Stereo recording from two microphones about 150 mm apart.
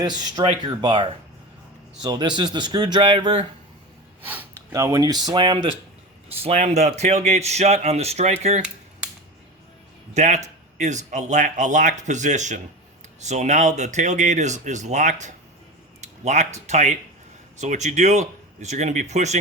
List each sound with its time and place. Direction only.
0.0 s speech: 30° right (ahead or behind)
4.2 s speech: 15° right (ahead or behind); by 5.7 s 35° right (ahead or behind)
6.4 s speech: 45° right (ahead or behind)
10.2 s speech: 50° right (ahead or behind)